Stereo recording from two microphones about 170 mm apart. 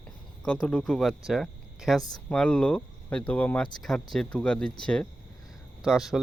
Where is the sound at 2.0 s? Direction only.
25° left (ahead or behind).